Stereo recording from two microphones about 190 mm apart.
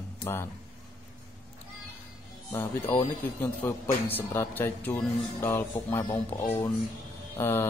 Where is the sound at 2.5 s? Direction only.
20° left (ahead or behind).